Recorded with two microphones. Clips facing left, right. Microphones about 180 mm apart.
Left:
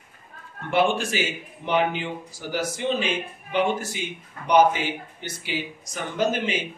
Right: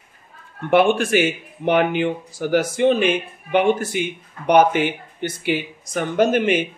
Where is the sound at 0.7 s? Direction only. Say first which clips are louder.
Right 6 dB; 60° right (ahead or behind).